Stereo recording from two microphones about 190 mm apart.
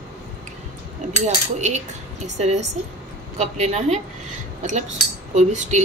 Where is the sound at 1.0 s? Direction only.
40° right (ahead or behind).